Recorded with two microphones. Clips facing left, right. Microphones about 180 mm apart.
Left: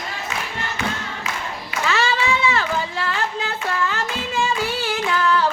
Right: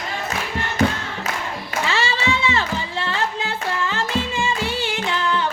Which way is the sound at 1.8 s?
30° right (ahead or behind).